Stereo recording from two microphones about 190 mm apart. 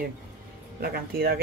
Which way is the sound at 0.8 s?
55° right (ahead or behind).